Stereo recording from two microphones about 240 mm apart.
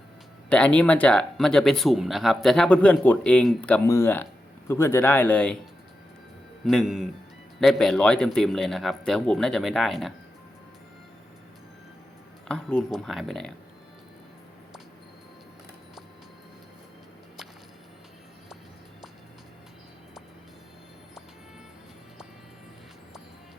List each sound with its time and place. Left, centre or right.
0.5 s speech: centre
6.7 s speech: centre
12.5 s speech: centre